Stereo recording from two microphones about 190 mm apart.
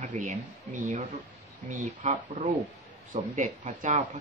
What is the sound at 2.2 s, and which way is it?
Speech, 25° right (ahead or behind).